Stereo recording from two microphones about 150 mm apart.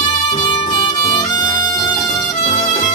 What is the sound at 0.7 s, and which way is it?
Music, 30° left (ahead or behind).